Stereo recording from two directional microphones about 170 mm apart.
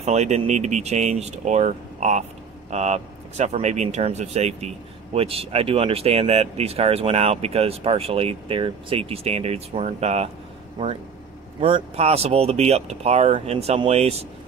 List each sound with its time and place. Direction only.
0.0 s speech: 40° right (ahead or behind)
11.6 s speech: 35° right (ahead or behind)